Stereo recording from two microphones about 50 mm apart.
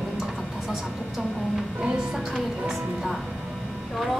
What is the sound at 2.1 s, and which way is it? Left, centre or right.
A woman's voice, centre.